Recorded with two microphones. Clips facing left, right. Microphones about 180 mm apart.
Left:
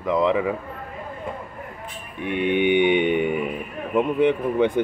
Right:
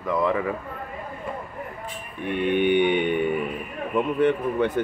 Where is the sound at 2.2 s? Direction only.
15° left (ahead or behind).